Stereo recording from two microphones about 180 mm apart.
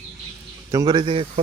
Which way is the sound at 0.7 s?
20° right (ahead or behind).